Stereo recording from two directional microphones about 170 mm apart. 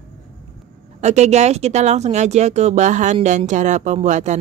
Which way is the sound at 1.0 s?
40° right (ahead or behind).